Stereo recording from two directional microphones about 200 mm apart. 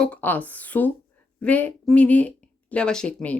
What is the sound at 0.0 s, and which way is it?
Speech, 10° left (ahead or behind).